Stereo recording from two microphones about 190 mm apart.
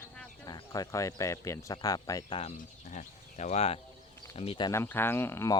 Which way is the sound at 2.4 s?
35° left (ahead or behind).